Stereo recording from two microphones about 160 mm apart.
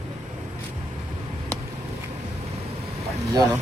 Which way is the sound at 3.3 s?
25° right (ahead or behind).